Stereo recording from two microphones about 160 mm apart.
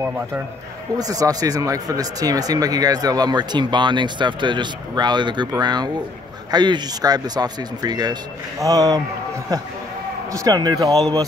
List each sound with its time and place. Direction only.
0.9 s speech: 25° right (ahead or behind)
10.3 s speech: 20° right (ahead or behind)